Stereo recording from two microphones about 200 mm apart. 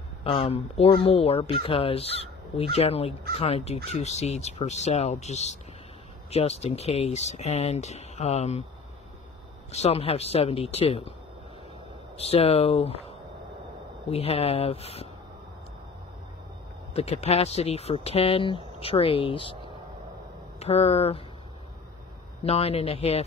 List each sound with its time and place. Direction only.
0.2 s speech: 30° left (ahead or behind)
9.7 s speech: 30° left (ahead or behind)
12.2 s speech: 30° left (ahead or behind)
14.1 s speech: 30° left (ahead or behind)
16.9 s speech: 30° left (ahead or behind)
22.4 s speech: 30° left (ahead or behind)